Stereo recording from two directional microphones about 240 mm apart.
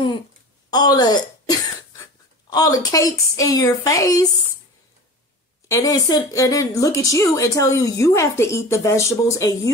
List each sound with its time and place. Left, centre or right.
0.7 s a woman's voice: centre
5.7 s a woman's voice: centre